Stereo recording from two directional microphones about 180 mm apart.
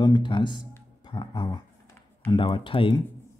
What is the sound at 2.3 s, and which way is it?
Speech, 25° left (ahead or behind).